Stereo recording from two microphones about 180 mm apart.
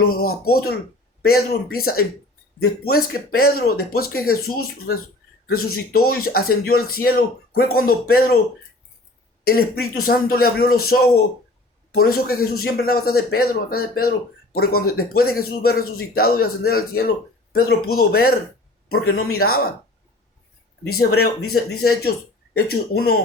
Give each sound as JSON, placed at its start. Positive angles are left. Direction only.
{"t": 0.0, "sound": "speech", "side_deg": 55}
{"t": 9.4, "sound": "speech", "side_deg": 55}
{"t": 20.8, "sound": "speech", "side_deg": 60}